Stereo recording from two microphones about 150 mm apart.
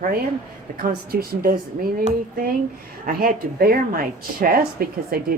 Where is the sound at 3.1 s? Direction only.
80° right.